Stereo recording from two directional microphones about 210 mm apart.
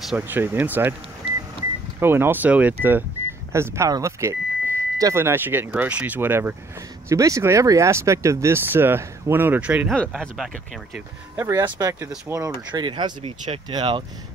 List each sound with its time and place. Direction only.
0.0 s speech: 5° right (ahead or behind)
2.0 s speech: 10° right (ahead or behind)
11.3 s speech: 10° right (ahead or behind)
12.7 s speech: 20° right (ahead or behind)